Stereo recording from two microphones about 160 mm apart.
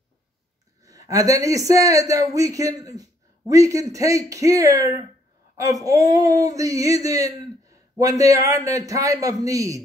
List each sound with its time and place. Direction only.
0.8 s a man's voice: 20° right (ahead or behind)